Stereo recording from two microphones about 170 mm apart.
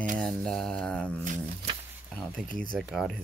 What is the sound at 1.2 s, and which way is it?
Speech, 45° right (ahead or behind).